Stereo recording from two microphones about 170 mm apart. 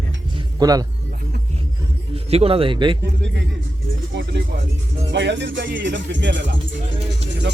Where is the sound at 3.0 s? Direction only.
90° right; by 4.6 s 70° right (ahead or behind).